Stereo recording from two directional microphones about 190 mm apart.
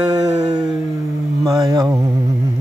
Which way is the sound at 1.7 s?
20° right (ahead or behind).